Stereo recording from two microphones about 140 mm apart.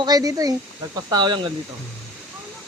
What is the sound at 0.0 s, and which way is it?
Speech, 25° right (ahead or behind).